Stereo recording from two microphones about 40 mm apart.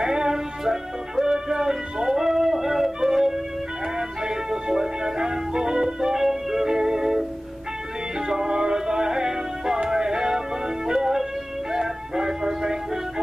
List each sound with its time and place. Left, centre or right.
0.0 s music: centre
4.5 s music: centre
8.3 s music: centre